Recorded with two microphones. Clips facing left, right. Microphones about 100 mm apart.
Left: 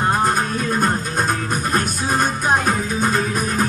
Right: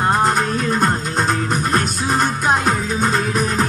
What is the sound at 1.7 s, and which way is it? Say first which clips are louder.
Music: left 1 dB; 10° left (ahead or behind).